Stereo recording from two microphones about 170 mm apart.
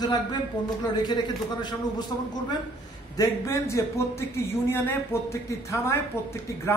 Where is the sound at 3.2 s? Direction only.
15° left (ahead or behind).